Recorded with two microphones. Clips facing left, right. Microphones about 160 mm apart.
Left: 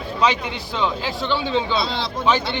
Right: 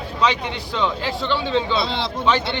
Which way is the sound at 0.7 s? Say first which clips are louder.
Even; 5° left (ahead or behind).